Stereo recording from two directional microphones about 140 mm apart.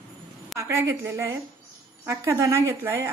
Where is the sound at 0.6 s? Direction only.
20° right (ahead or behind).